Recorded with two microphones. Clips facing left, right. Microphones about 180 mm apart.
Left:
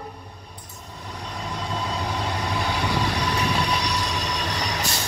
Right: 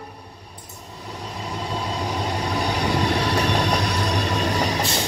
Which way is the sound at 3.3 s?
50° right (ahead or behind).